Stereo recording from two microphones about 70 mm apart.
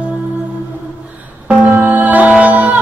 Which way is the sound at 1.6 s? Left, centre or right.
Right.